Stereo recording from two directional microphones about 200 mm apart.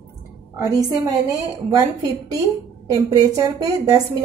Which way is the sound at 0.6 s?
20° right (ahead or behind).